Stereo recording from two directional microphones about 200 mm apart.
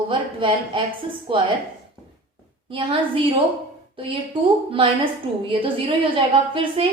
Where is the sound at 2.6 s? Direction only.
25° right (ahead or behind).